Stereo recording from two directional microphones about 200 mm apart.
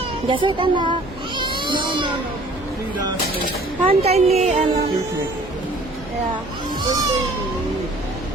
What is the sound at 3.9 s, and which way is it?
Speech, 30° right (ahead or behind).